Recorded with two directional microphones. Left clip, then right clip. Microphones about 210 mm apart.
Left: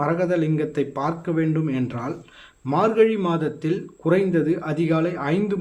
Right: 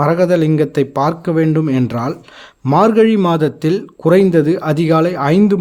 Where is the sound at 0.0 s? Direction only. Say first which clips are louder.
Right 9 dB; 45° right (ahead or behind).